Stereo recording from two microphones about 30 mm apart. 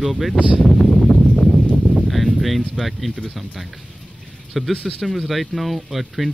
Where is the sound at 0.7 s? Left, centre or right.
Left.